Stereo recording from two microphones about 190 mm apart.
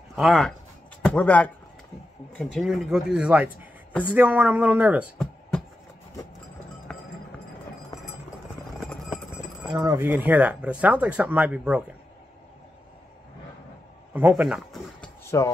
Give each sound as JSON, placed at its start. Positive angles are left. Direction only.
{"t": 0.1, "sound": "speech", "side_deg": 0}
{"t": 6.9, "sound": "a sound", "side_deg": 5}
{"t": 8.7, "sound": "clip-clop", "side_deg": 0}
{"t": 9.7, "sound": "speech", "side_deg": -15}
{"t": 14.1, "sound": "speech", "side_deg": -10}
{"t": 15.3, "sound": "speech", "side_deg": 15}